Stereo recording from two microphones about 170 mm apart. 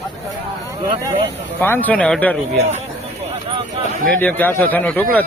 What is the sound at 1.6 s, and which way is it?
Speech, 10° left (ahead or behind).